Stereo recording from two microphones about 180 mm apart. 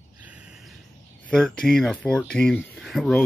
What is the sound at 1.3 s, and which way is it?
Speech, 5° left (ahead or behind).